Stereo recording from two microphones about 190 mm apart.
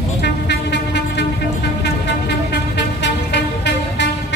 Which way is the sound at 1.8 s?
60° left (ahead or behind).